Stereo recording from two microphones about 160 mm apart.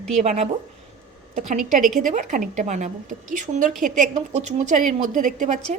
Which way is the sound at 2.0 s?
55° right (ahead or behind).